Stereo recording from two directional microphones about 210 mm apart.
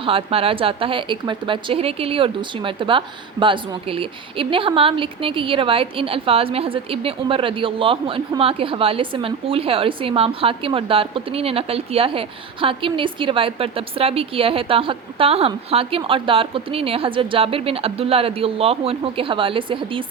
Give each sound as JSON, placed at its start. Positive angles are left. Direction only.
{"t": 0.0, "sound": "a woman's voice", "side_deg": -25}